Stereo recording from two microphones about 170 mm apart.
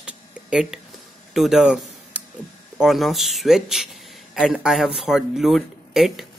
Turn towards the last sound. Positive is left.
turn(degrees=0)  # may be behind; listen again after turning